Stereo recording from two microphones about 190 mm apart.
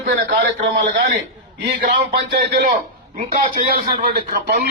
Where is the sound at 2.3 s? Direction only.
55° right (ahead or behind).